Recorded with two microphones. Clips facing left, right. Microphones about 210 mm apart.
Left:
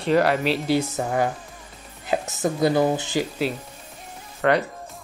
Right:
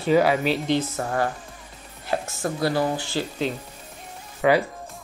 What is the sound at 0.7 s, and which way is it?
Speech, 15° left (ahead or behind).